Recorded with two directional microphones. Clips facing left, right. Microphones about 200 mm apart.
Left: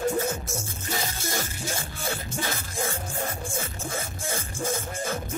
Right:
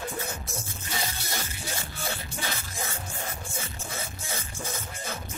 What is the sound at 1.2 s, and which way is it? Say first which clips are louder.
Music: left 5 dB; 45° left (ahead or behind).